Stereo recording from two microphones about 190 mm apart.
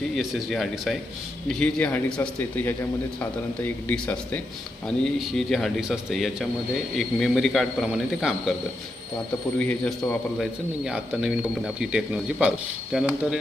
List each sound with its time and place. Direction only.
0.2 s a man's voice: centre (ahead or behind)
9.6 s a man's voice: 5° left (ahead or behind)